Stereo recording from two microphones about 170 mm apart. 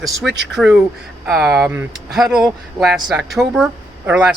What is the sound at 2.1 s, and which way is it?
Speech, centre (ahead or behind).